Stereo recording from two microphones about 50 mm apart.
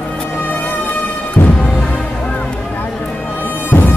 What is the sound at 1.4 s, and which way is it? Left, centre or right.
Music, left.